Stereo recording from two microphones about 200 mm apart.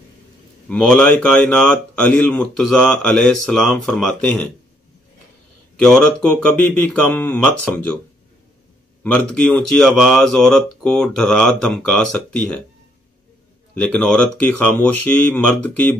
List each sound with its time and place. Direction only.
0.7 s speech: 5° left (ahead or behind)
5.8 s speech: 5° left (ahead or behind)
9.0 s speech: 5° left (ahead or behind)
13.7 s speech: 5° left (ahead or behind)